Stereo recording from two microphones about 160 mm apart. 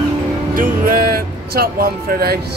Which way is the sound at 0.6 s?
65° right (ahead or behind).